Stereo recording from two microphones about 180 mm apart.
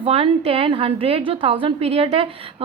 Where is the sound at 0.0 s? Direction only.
35° right (ahead or behind).